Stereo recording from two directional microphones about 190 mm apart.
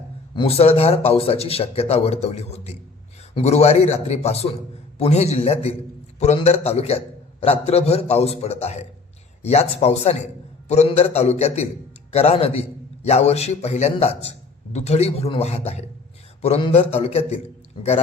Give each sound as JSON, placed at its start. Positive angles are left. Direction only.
{"t": 0.3, "sound": "a man's voice", "side_deg": 30}